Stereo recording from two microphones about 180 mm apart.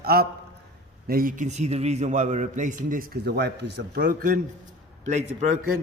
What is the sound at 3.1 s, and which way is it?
Speech, 65° right (ahead or behind).